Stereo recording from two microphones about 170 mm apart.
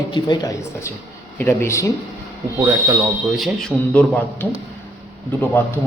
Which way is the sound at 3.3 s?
Centre (ahead or behind).